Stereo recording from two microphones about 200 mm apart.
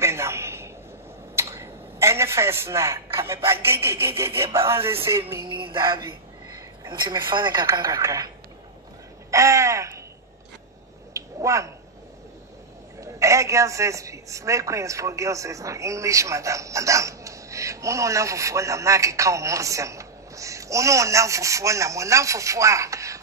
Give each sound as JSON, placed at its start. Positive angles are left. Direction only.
{"t": 0.0, "sound": "a sound", "side_deg": -15}
{"t": 3.4, "sound": "a man's voice", "side_deg": -15}
{"t": 5.6, "sound": "speech", "side_deg": -25}
{"t": 9.3, "sound": "a sound", "side_deg": -15}
{"t": 11.1, "sound": "finger snapping", "side_deg": -15}
{"t": 13.0, "sound": "a man's voice", "side_deg": -15}